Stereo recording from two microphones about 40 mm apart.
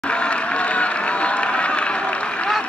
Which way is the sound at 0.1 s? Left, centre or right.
Left.